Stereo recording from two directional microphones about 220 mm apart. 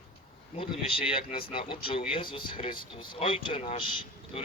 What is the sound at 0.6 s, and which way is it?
Speech, 25° left (ahead or behind).